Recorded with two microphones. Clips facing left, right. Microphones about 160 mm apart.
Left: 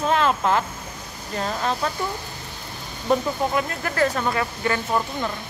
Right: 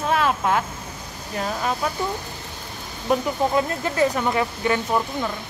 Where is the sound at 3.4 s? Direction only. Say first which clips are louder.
Right 3 dB; 20° right (ahead or behind).